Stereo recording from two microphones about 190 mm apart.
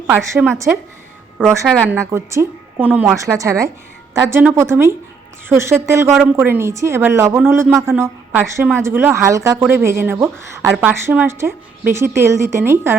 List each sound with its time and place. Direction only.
0.1 s a woman's voice: 5° right (ahead or behind)
1.5 s a woman's voice: 15° right (ahead or behind)
3.3 s a woman's voice: 15° right (ahead or behind)
6.1 s a woman's voice: centre (ahead or behind)
6.3 s a woman's voice: 10° right (ahead or behind)